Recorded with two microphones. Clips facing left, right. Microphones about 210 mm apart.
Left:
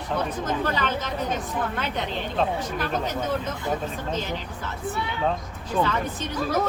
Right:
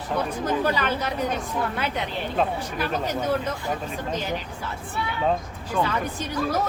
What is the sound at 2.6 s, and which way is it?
A woman's voice, 10° right (ahead or behind).